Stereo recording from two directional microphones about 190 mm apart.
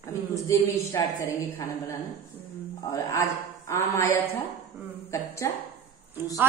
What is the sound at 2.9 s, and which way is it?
A woman's voice, 15° left (ahead or behind).